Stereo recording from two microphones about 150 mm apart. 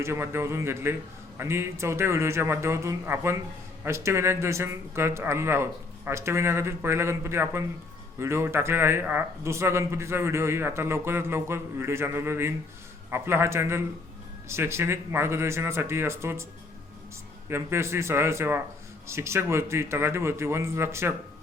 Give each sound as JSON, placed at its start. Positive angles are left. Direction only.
{"t": 0.0, "sound": "a man's voice", "side_deg": -15}
{"t": 17.5, "sound": "a man's voice", "side_deg": -15}